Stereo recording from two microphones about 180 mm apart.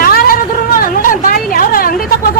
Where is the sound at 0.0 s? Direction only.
55° left (ahead or behind).